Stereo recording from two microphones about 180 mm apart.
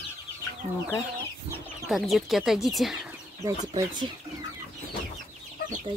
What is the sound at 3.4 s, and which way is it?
Speech, 25° right (ahead or behind).